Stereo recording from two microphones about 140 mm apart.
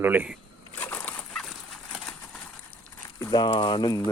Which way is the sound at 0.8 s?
10° left (ahead or behind).